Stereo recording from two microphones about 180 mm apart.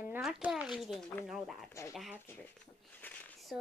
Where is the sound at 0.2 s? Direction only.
5° right (ahead or behind).